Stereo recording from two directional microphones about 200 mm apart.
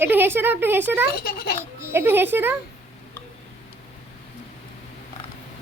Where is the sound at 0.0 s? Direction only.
10° right (ahead or behind).